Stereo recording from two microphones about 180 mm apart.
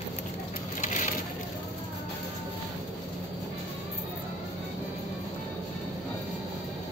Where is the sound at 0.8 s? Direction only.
45° left (ahead or behind).